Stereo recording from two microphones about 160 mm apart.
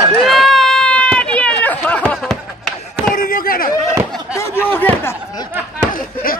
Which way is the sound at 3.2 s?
60° left (ahead or behind).